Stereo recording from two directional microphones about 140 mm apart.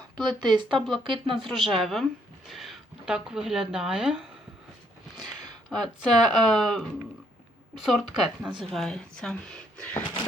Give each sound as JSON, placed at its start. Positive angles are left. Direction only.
{"t": 0.2, "sound": "speech", "side_deg": -30}
{"t": 0.8, "sound": "speech", "side_deg": 0}
{"t": 1.0, "sound": "speech", "side_deg": -35}
{"t": 1.4, "sound": "speech", "side_deg": 0}
{"t": 5.2, "sound": "a sound", "side_deg": -30}
{"t": 5.7, "sound": "speech", "side_deg": 0}
{"t": 9.7, "sound": "a sound", "side_deg": 10}